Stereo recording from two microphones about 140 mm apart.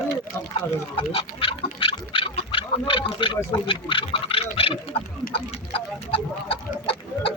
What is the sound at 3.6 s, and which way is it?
Speech, 35° left (ahead or behind).